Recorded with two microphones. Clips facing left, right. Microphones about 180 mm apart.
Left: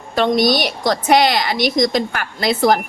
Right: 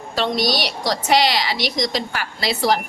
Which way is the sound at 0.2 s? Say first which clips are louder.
Left 6 dB; 50° left (ahead or behind).